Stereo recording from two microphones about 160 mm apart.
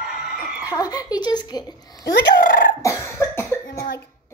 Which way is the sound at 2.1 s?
65° left (ahead or behind).